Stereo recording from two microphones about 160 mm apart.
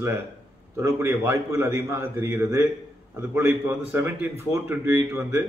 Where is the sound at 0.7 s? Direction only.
15° right (ahead or behind).